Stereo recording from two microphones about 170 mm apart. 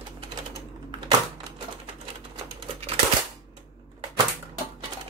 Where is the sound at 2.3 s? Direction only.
30° right (ahead or behind).